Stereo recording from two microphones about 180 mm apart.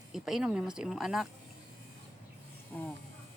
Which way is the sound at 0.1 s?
5° right (ahead or behind).